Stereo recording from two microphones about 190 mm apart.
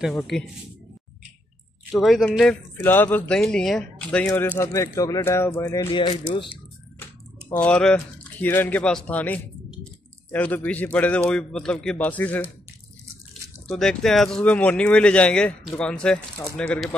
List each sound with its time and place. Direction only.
0.0 s speech: 5° left (ahead or behind)
1.9 s a man's voice: centre (ahead or behind); by 6.5 s 25° left (ahead or behind)
7.5 s a man's voice: 5° left (ahead or behind)